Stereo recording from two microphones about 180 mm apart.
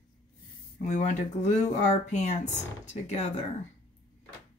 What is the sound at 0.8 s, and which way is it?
Speech, 40° left (ahead or behind).